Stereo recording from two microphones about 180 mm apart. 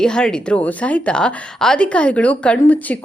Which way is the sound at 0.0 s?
5° left (ahead or behind).